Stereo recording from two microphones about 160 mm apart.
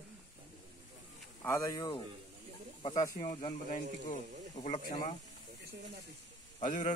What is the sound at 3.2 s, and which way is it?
Speech, 45° left (ahead or behind).